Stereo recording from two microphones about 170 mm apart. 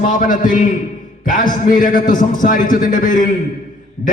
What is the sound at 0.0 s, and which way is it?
A man's voice, 50° left (ahead or behind).